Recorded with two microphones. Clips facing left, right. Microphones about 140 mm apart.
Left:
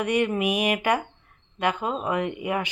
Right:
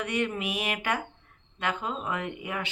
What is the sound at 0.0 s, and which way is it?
Speech, 15° left (ahead or behind).